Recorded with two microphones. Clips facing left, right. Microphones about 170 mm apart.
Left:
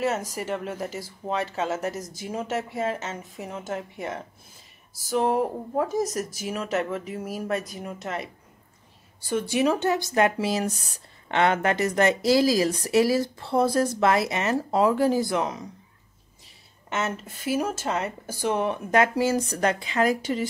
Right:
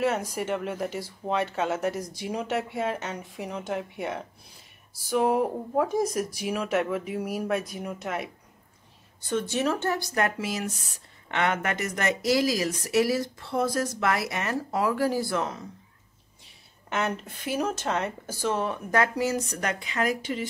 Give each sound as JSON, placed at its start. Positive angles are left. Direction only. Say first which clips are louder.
{"t": 0.0, "sound": "speech", "louder": "even", "side_deg": 0}
{"t": 9.2, "sound": "speech", "louder": "left 3 dB", "side_deg": 10}
{"t": 16.9, "sound": "speech", "louder": "even", "side_deg": 0}